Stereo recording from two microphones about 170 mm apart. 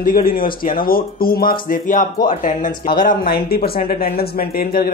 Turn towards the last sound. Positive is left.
turn(degrees=60)  # may be behind; listen again after turning